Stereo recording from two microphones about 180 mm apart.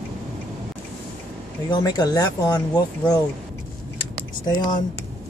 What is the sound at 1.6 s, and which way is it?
Speech, 25° left (ahead or behind).